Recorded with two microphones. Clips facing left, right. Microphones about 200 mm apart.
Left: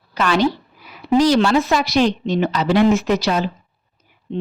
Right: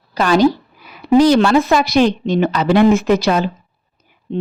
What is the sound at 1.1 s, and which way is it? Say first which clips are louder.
Speech: right 4 dB; 55° right (ahead or behind).